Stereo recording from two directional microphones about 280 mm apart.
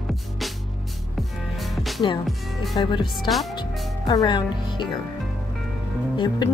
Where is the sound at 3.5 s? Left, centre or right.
Centre.